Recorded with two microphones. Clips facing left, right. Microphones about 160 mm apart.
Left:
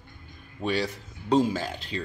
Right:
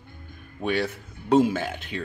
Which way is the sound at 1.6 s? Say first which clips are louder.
Right 2 dB; 60° right (ahead or behind).